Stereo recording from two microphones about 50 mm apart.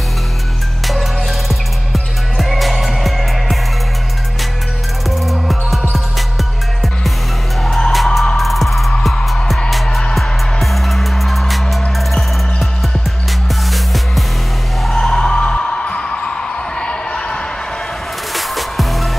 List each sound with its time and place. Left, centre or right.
1.5 s music: centre
5.2 s music: centre
7.9 s music: centre
14.8 s music: centre
15.0 s music: centre
18.3 s music: centre